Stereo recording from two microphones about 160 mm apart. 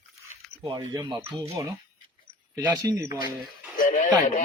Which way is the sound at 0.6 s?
25° right (ahead or behind).